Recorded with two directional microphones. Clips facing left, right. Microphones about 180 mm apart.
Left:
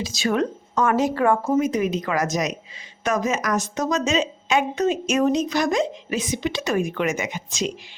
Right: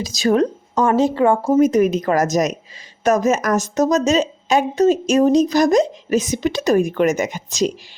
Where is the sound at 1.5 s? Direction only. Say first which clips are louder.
Right 7 dB; 45° right (ahead or behind).